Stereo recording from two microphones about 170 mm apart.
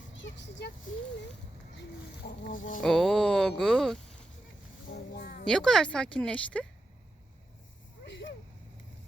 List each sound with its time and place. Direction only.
0.1 s vehicle: 90° left
2.5 s speech: 50° left (ahead or behind)
2.8 s speech: centre (ahead or behind)
5.1 s speech: 60° left (ahead or behind)
5.5 s speech: 5° left (ahead or behind)
8.0 s a sound: 90° left